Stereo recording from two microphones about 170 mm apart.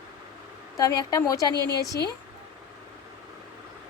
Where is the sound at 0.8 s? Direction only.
20° left (ahead or behind).